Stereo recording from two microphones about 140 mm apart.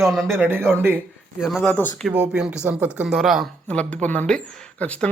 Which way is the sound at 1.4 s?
Centre (ahead or behind).